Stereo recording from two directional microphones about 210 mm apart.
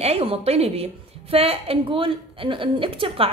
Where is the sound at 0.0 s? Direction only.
30° right (ahead or behind).